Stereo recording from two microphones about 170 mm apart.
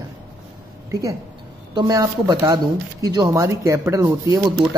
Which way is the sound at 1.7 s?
25° right (ahead or behind).